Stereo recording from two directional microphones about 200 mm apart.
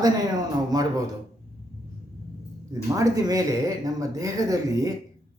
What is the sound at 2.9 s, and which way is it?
A man's voice, 15° right (ahead or behind).